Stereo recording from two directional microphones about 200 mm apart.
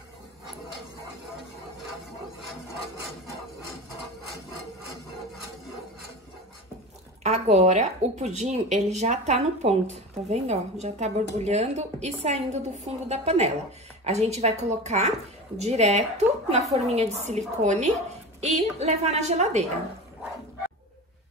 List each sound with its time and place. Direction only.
7.2 s speech: 35° right (ahead or behind)